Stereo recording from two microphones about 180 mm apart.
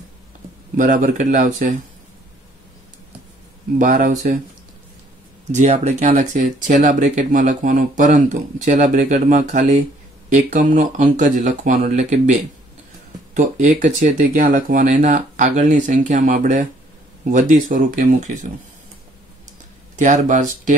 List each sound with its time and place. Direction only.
0.7 s speech: 45° right (ahead or behind)
3.7 s speech: 45° right (ahead or behind)
5.5 s speech: 40° right (ahead or behind)
20.0 s speech: 45° right (ahead or behind)